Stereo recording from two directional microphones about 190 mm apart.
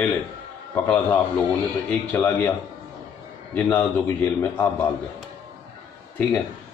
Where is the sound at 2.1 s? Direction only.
10° left (ahead or behind).